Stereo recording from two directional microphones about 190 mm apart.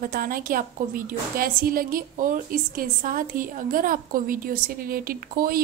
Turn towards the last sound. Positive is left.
turn(degrees=-50)  # may be behind; listen again after turning